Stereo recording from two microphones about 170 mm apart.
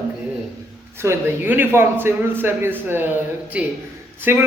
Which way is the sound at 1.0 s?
15° right (ahead or behind).